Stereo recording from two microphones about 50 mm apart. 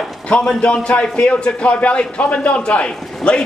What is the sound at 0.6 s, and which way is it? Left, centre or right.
A man's voice, left.